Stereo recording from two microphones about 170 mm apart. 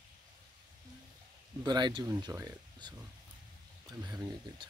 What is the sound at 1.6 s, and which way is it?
Speech, 25° right (ahead or behind).